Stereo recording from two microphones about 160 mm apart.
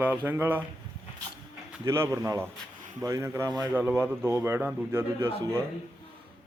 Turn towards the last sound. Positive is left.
turn(degrees=-15)  # may be behind; listen again after turning